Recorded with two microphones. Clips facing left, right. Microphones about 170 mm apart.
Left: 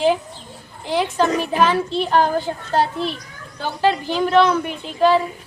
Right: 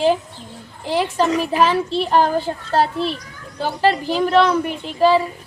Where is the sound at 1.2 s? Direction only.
Centre (ahead or behind).